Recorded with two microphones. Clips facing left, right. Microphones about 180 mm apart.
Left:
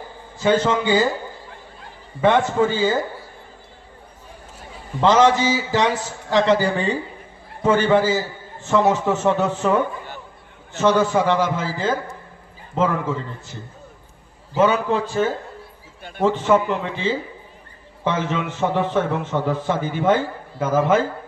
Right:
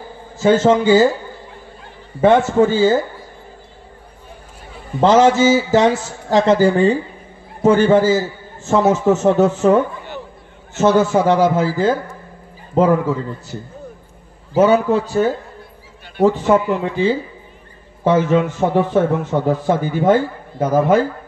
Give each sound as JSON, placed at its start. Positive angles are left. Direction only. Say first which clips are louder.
{"t": 0.4, "sound": "a man's voice", "louder": "right 5 dB", "side_deg": -45}
{"t": 2.2, "sound": "a man's voice", "louder": "right 5 dB", "side_deg": -45}
{"t": 5.0, "sound": "a man's voice", "louder": "right 4 dB", "side_deg": -45}